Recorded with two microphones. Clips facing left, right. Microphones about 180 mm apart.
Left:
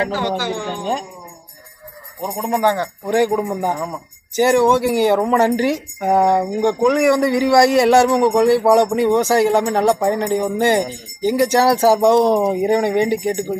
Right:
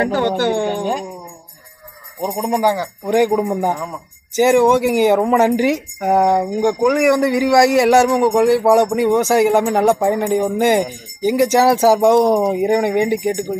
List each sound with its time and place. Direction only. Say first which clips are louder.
0.0 s speech: right 4 dB; 60° right (ahead or behind)
2.2 s speech: right 1 dB; 15° right (ahead or behind)
3.7 s speech: left 1 dB; 5° left (ahead or behind)
4.4 s speech: right 2 dB; 15° right (ahead or behind)